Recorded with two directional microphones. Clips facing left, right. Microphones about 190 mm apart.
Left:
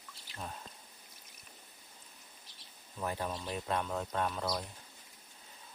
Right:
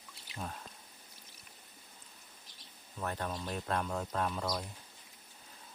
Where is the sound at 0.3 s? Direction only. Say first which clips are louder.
Right 1 dB; centre (ahead or behind).